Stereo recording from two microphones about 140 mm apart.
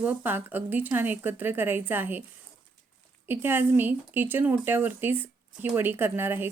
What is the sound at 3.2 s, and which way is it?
A woman's voice, 15° right (ahead or behind).